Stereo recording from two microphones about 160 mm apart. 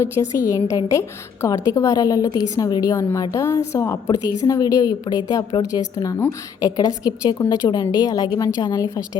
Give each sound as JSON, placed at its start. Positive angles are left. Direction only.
{"t": 0.0, "sound": "a woman's voice", "side_deg": 20}